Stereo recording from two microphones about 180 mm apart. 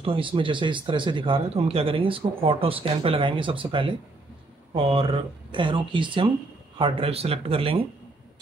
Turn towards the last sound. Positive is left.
turn(degrees=-30)  # may be behind; listen again after turning